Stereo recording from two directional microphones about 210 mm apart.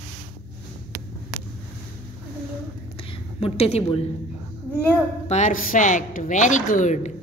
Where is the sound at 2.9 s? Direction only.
25° left (ahead or behind).